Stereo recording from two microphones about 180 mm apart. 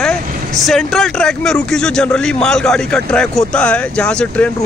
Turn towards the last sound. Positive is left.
turn(degrees=5)  # may be behind; listen again after turning